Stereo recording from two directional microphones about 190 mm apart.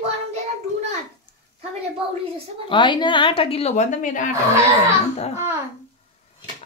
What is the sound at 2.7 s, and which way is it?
A woman's voice, 25° left (ahead or behind).